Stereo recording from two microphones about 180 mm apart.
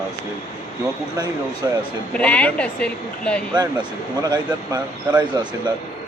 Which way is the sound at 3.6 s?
25° right (ahead or behind).